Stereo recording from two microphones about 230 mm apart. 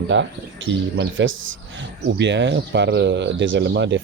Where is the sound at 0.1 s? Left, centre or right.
Right.